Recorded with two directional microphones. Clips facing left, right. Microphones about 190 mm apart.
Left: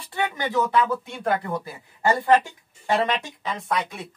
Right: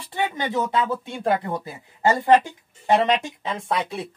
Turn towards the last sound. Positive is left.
turn(degrees=-30)  # may be behind; listen again after turning